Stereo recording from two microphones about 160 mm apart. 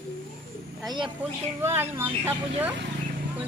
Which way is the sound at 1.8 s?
15° right (ahead or behind).